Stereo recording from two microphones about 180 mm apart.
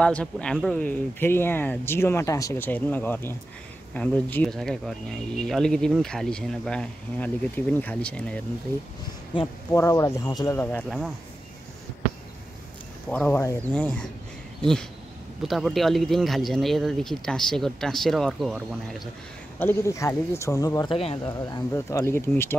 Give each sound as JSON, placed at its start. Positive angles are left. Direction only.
{"t": 0.0, "sound": "speech", "side_deg": 5}
{"t": 9.7, "sound": "speech", "side_deg": 15}
{"t": 13.1, "sound": "speech", "side_deg": 10}
{"t": 15.4, "sound": "speech", "side_deg": 0}
{"t": 19.6, "sound": "speech", "side_deg": 15}
{"t": 21.3, "sound": "speech", "side_deg": 20}